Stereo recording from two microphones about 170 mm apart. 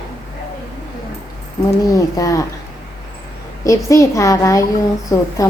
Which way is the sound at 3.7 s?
20° left (ahead or behind).